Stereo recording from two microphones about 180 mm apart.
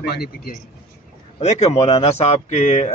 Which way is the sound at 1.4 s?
35° left (ahead or behind).